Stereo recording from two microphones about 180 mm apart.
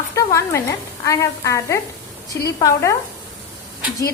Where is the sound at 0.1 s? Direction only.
15° left (ahead or behind).